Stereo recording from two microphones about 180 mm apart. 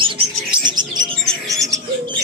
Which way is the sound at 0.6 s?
25° right (ahead or behind).